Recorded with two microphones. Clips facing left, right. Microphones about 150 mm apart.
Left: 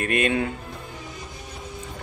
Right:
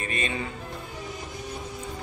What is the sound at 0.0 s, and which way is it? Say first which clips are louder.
Speech: left 8 dB; 60° left (ahead or behind).